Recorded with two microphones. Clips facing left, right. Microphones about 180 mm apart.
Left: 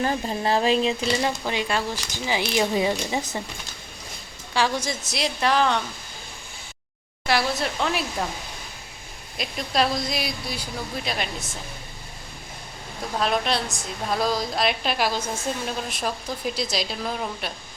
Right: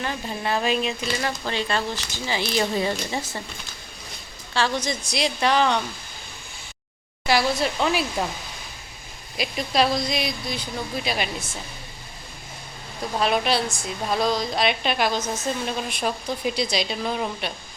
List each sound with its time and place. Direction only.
0.0 s speech: 35° left (ahead or behind)
1.5 s speech: 10° left (ahead or behind)
4.5 s speech: 10° left (ahead or behind)
7.3 s speech: centre (ahead or behind)
9.4 s speech: centre (ahead or behind)
13.1 s speech: 5° right (ahead or behind)